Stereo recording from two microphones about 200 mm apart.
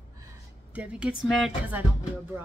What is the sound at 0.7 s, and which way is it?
Speech, 5° right (ahead or behind).